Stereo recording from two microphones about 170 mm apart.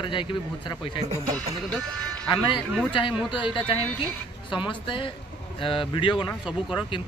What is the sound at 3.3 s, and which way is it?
A man's voice, 30° left (ahead or behind).